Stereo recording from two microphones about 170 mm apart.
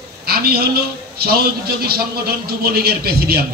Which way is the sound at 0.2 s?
65° right (ahead or behind).